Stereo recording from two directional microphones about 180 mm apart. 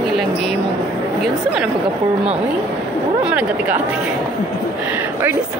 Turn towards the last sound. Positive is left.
turn(degrees=-10)  # may be behind; listen again after turning